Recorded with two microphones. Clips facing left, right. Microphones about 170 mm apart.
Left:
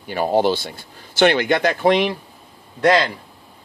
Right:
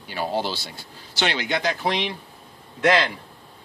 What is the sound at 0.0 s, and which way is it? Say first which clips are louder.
Speech: left 8 dB; 50° left (ahead or behind).